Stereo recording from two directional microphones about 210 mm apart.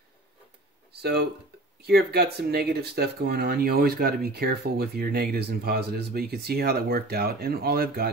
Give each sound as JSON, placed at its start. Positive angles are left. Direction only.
{"t": 1.8, "sound": "speech", "side_deg": -50}